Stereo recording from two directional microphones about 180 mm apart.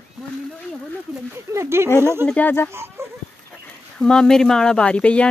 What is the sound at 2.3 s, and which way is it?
Speech, 10° left (ahead or behind).